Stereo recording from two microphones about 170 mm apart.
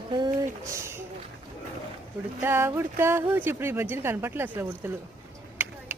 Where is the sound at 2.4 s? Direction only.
15° right (ahead or behind).